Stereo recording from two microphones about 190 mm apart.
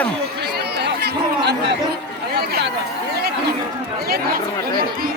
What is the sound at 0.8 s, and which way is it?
Chatter, 60° right (ahead or behind).